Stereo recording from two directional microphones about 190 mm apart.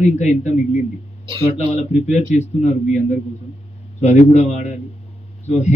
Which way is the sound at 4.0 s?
35° left (ahead or behind).